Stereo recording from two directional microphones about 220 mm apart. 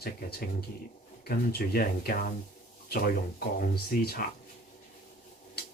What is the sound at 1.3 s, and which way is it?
Speech, 45° left (ahead or behind).